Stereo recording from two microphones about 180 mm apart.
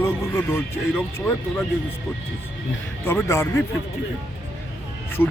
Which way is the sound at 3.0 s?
10° left (ahead or behind).